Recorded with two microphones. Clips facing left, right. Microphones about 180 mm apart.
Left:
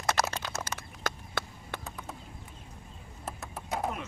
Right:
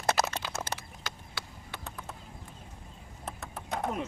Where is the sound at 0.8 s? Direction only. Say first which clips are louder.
Left 6 dB; 50° left (ahead or behind).